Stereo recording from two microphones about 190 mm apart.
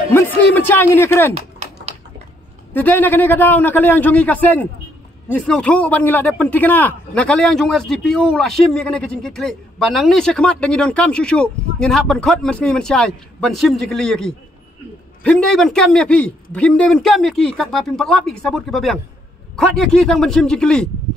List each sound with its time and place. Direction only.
0.4 s a man's voice: 10° left (ahead or behind)
2.7 s a man's voice: 10° left (ahead or behind)